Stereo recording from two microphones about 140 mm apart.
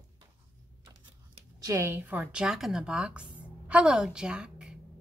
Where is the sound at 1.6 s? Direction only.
20° right (ahead or behind).